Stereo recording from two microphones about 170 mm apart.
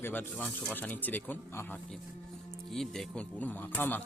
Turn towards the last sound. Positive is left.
turn(degrees=10)  # may be behind; listen again after turning